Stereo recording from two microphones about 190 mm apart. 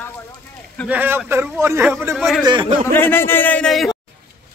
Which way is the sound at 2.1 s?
Centre (ahead or behind).